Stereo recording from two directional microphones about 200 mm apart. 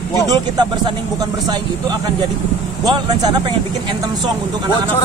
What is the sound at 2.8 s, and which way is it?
Speech, 20° right (ahead or behind).